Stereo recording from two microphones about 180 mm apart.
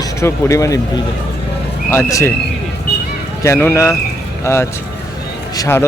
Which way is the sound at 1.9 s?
15° left (ahead or behind).